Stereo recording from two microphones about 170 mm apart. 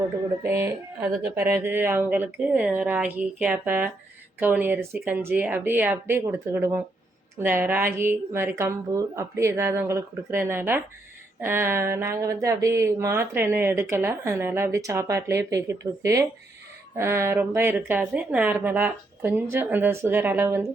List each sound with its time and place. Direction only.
0.4 s speech: 15° right (ahead or behind)